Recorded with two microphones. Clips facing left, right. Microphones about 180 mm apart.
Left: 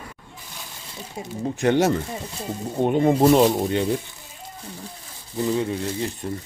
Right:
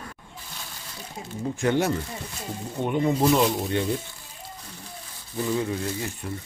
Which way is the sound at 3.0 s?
45° left (ahead or behind).